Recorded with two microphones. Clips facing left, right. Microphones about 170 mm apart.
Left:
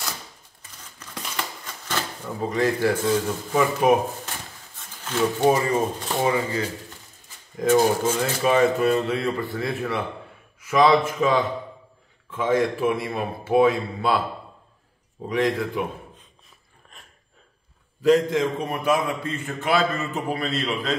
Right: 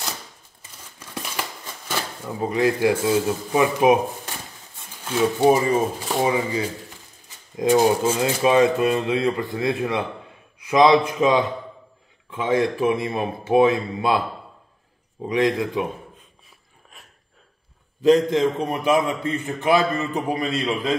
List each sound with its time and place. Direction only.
0.9 s scissors: 10° right (ahead or behind)
1.9 s speech: 10° right (ahead or behind)
5.0 s speech: 10° right (ahead or behind)
15.2 s speech: 15° right (ahead or behind)
18.0 s a man's voice: 25° right (ahead or behind)